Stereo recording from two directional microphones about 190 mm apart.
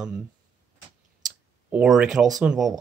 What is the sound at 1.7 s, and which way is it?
Speech, 5° right (ahead or behind).